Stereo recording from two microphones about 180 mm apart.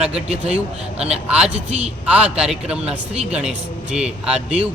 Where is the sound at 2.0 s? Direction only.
5° right (ahead or behind).